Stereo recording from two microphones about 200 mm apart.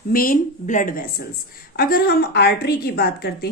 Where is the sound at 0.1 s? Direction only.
45° left (ahead or behind).